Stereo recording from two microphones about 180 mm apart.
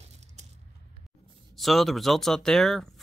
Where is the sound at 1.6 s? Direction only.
Centre (ahead or behind).